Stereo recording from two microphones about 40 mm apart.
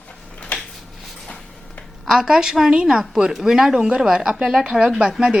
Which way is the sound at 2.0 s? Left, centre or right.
Centre.